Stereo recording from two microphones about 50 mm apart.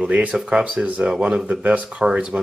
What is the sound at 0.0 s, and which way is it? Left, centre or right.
Speech, right.